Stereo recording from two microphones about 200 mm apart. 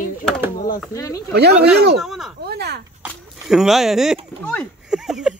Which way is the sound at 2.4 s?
55° right (ahead or behind).